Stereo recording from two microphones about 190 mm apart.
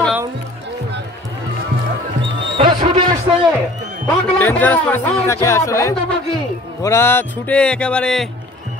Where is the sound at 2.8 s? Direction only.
35° right (ahead or behind).